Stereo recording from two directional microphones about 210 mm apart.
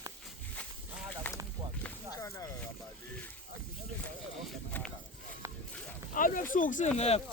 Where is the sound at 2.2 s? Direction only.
15° left (ahead or behind).